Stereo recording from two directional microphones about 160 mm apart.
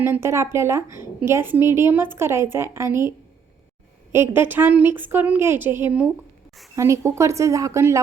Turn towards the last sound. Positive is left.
turn(degrees=-20)  # may be behind; listen again after turning